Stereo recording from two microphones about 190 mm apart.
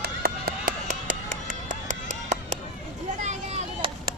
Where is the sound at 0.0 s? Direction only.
50° right (ahead or behind).